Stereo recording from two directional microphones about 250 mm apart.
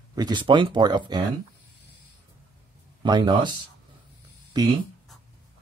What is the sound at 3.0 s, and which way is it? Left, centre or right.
Speech, centre.